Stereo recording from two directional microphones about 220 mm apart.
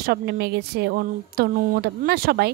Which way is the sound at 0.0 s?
45° right (ahead or behind).